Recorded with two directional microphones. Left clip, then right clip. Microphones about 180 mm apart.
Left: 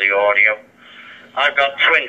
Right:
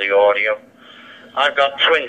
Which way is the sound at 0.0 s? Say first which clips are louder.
Right 1 dB; 55° right (ahead or behind).